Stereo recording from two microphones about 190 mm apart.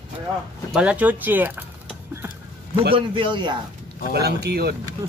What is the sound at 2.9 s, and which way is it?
Speech, 25° right (ahead or behind).